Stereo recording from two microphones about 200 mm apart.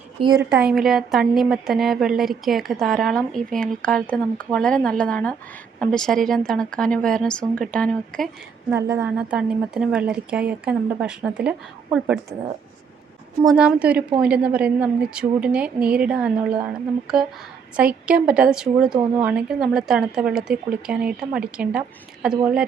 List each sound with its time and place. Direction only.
0.2 s a woman's voice: 25° right (ahead or behind)
0.5 s a woman's voice: centre (ahead or behind)
8.7 s a woman's voice: 10° right (ahead or behind)
13.4 s a woman's voice: 5° right (ahead or behind)